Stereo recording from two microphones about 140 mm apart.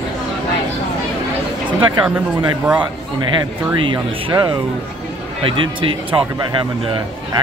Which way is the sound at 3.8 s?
35° right (ahead or behind).